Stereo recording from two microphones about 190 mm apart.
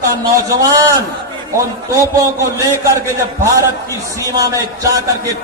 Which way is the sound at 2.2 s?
15° right (ahead or behind).